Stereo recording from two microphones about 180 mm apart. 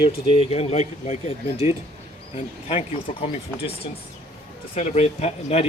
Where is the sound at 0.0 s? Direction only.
35° left (ahead or behind).